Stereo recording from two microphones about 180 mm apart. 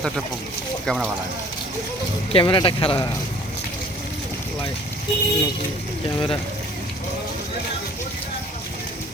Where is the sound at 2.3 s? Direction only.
30° left (ahead or behind).